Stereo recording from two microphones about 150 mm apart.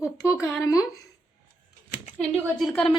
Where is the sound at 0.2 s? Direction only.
20° left (ahead or behind).